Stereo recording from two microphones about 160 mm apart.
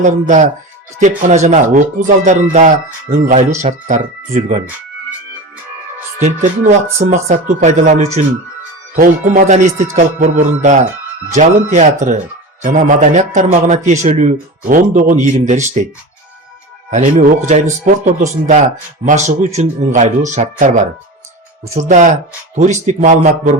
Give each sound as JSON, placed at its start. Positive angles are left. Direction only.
{"t": 0.0, "sound": "speech", "side_deg": -50}
{"t": 7.0, "sound": "speech", "side_deg": -45}
{"t": 16.9, "sound": "speech", "side_deg": -50}